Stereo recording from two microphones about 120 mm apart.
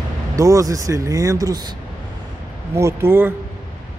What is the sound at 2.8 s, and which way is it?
Speech, 20° right (ahead or behind).